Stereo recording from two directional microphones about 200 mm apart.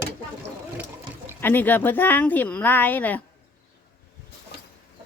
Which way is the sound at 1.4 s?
10° left (ahead or behind).